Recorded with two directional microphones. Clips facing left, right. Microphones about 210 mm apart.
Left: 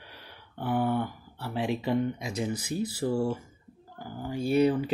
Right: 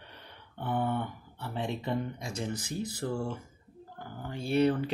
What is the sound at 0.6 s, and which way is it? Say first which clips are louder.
Speech: left 4 dB; 5° left (ahead or behind).